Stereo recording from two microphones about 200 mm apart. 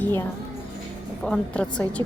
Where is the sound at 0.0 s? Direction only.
10° left (ahead or behind).